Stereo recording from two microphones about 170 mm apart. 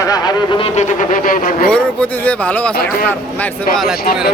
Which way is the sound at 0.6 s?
45° left (ahead or behind).